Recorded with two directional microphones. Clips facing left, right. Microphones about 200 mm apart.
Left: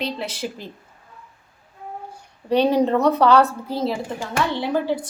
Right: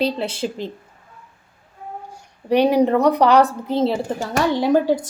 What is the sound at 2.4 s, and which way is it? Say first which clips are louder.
A woman's voice: right 2 dB; 15° right (ahead or behind).